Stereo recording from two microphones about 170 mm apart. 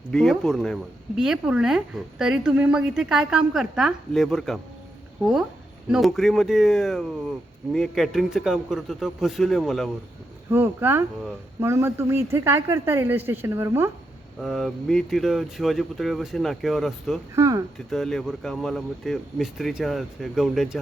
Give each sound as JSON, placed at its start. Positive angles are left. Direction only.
{"t": 0.1, "sound": "speech", "side_deg": 0}
{"t": 10.5, "sound": "speech", "side_deg": -15}
{"t": 14.4, "sound": "speech", "side_deg": 0}
{"t": 17.3, "sound": "speech", "side_deg": -20}
{"t": 17.7, "sound": "speech", "side_deg": 0}